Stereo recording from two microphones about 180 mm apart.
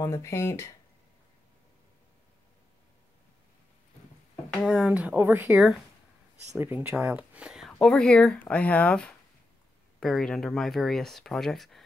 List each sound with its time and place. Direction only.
0.0 s speech: 15° left (ahead or behind)
4.6 s speech: 5° right (ahead or behind)